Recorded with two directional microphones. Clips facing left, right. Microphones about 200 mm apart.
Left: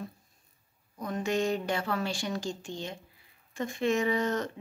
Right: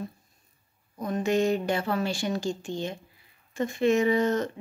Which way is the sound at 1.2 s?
5° right (ahead or behind).